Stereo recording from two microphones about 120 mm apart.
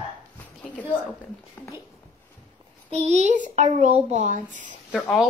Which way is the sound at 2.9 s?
65° right (ahead or behind).